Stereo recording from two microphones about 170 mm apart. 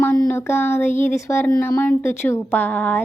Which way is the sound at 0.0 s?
10° left (ahead or behind).